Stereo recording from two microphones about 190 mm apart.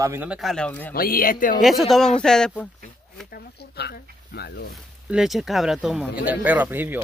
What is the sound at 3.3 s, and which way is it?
Speech, 60° left (ahead or behind).